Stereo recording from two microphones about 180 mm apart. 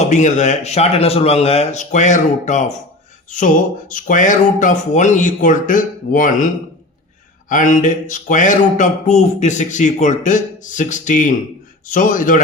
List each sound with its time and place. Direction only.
0.0 s speech: 40° left (ahead or behind)
7.5 s speech: 45° left (ahead or behind)